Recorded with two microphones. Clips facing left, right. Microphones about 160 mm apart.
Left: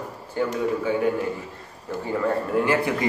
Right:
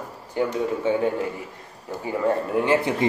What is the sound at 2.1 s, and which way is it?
Speech, 20° right (ahead or behind).